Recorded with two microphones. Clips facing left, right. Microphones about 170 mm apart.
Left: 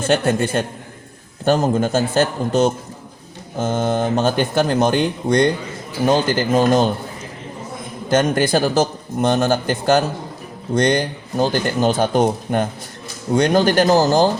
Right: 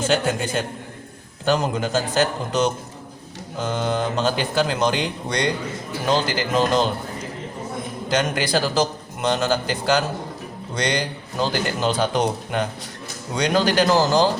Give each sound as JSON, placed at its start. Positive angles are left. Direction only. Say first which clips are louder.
{"t": 1.5, "sound": "a man's voice", "louder": "left 5 dB", "side_deg": 45}
{"t": 8.1, "sound": "a man's voice", "louder": "left 5 dB", "side_deg": 50}